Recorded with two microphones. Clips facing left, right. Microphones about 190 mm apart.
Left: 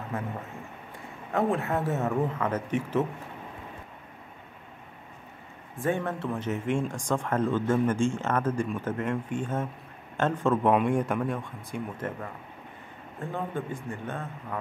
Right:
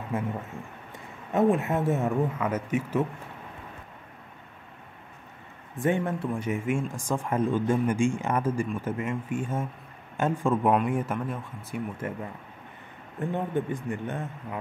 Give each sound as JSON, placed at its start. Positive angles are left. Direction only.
{"t": 1.3, "sound": "speech", "side_deg": -20}
{"t": 5.8, "sound": "speech", "side_deg": -20}
{"t": 13.2, "sound": "speech", "side_deg": -20}